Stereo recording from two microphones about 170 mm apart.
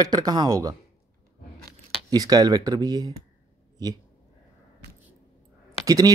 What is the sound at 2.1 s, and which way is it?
Speech, 20° right (ahead or behind).